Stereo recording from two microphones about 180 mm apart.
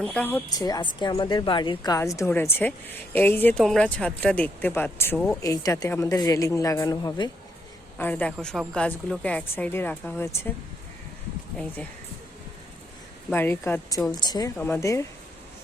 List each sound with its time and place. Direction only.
0.0 s a woman's voice: 5° left (ahead or behind)
0.6 s a woman's voice: 25° left (ahead or behind)
7.9 s a woman's voice: 10° left (ahead or behind)
13.3 s a woman's voice: 10° left (ahead or behind)
14.1 s a woman's voice: 25° left (ahead or behind)